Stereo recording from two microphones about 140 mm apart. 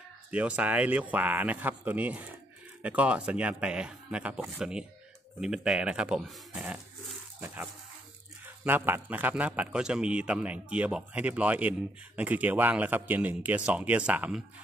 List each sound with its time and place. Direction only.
0.3 s a man's voice: 10° right (ahead or behind)